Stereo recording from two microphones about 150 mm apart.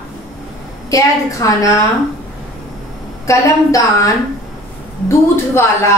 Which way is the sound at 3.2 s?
20° left (ahead or behind).